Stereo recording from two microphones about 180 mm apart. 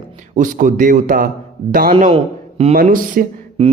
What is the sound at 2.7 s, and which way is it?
Speech, 50° right (ahead or behind).